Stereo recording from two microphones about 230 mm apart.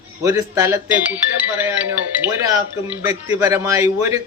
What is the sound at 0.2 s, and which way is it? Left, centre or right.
Speech, centre.